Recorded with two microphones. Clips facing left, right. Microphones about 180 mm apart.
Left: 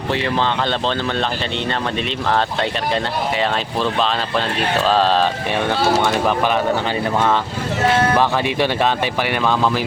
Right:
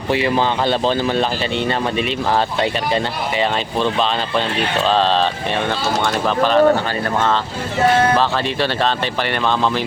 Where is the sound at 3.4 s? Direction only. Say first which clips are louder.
Right 5 dB; centre (ahead or behind).